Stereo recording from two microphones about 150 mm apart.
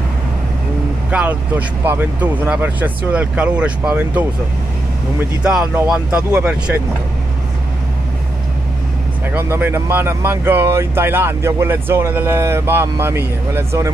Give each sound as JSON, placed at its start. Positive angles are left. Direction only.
{"t": 1.1, "sound": "speech", "side_deg": -10}
{"t": 5.4, "sound": "speech", "side_deg": -5}
{"t": 9.3, "sound": "speech", "side_deg": -15}